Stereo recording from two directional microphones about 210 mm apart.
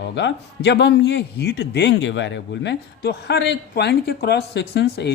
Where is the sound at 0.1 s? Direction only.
55° left (ahead or behind).